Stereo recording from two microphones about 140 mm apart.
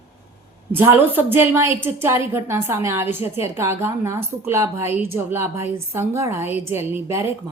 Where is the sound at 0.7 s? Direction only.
15° right (ahead or behind).